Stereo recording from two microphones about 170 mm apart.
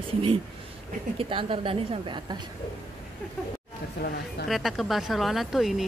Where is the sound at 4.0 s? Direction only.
75° left (ahead or behind).